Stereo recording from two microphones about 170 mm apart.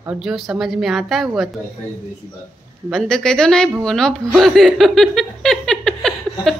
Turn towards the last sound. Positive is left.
turn(degrees=0)  # may be behind; listen again after turning